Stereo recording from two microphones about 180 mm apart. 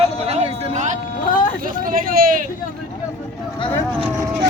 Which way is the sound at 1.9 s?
50° right (ahead or behind).